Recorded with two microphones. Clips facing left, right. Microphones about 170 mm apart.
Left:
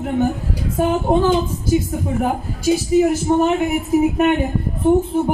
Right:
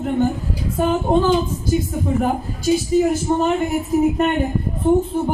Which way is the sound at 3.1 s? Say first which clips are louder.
Left 2 dB; 10° left (ahead or behind).